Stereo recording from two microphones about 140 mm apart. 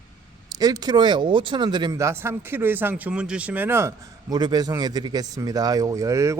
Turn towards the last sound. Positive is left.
turn(degrees=-20)  # may be behind; listen again after turning